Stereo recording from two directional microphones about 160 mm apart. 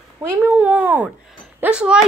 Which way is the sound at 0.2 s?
10° right (ahead or behind).